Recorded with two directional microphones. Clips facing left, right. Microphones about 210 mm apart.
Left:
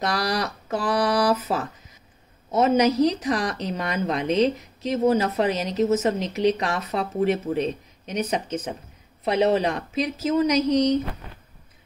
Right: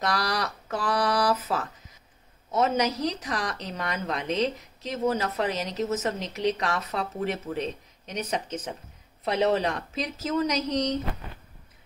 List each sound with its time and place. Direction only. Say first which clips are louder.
0.0 s speech: left 3 dB; 10° left (ahead or behind)
0.8 s a sound: left 3 dB; 10° left (ahead or behind)
1.3 s a woman's voice: left 4 dB; 20° left (ahead or behind)